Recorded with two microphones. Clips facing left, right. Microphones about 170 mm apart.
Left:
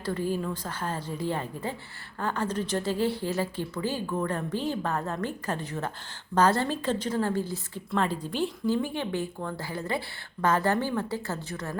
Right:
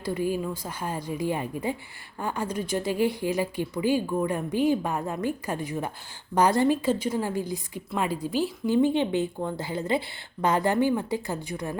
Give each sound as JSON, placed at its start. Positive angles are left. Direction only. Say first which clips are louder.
{"t": 0.0, "sound": "a woman's voice", "louder": "right 2 dB", "side_deg": -10}
{"t": 8.6, "sound": "a woman's voice", "louder": "right 9 dB", "side_deg": -20}